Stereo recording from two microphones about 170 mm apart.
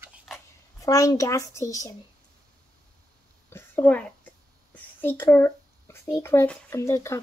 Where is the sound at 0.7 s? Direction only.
20° left (ahead or behind).